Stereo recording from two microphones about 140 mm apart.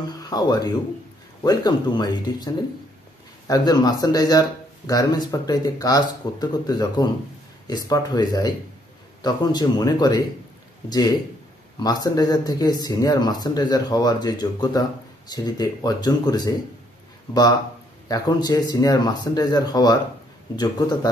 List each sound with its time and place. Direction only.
0.1 s speech: 30° left (ahead or behind)